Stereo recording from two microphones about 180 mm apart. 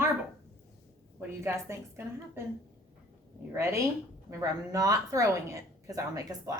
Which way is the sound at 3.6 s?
15° right (ahead or behind).